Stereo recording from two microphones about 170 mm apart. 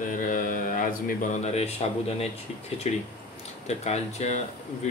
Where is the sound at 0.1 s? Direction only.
50° left (ahead or behind).